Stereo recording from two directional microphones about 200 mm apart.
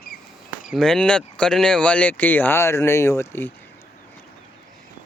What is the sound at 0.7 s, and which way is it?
Speech, 5° left (ahead or behind).